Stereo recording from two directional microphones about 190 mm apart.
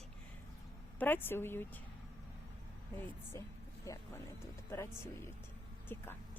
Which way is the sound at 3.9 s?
15° left (ahead or behind).